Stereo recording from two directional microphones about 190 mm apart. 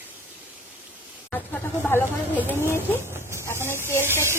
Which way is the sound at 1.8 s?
10° left (ahead or behind).